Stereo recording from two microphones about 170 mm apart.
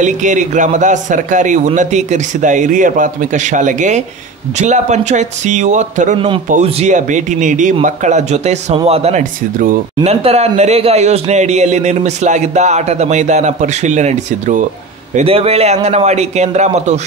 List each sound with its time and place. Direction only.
0.0 s a man's voice: 45° right (ahead or behind)
6.1 s a man's voice: 30° right (ahead or behind); by 9.8 s 50° right (ahead or behind)
10.0 s speech: 40° right (ahead or behind)